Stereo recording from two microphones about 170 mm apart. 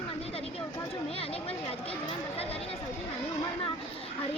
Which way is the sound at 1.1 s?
35° left (ahead or behind).